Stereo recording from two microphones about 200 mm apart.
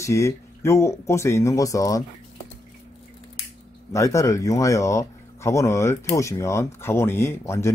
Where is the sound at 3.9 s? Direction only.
15° left (ahead or behind).